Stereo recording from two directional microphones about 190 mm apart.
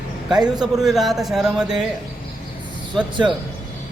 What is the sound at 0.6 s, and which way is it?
A man's voice, centre (ahead or behind).